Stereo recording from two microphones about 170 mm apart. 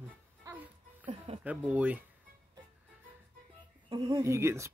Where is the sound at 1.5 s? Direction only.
10° right (ahead or behind).